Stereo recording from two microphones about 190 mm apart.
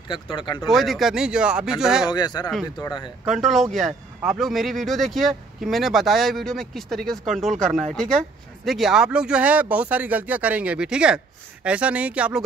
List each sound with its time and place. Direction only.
0.1 s speech: 25° left (ahead or behind)
0.7 s speech: centre (ahead or behind)
2.0 s speech: 20° left (ahead or behind)
3.3 s speech: centre (ahead or behind)